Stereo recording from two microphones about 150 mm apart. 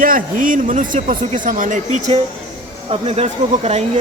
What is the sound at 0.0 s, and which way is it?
A man's voice, 65° right (ahead or behind).